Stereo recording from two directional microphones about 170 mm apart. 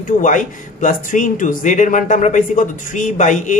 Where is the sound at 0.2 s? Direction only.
50° left (ahead or behind).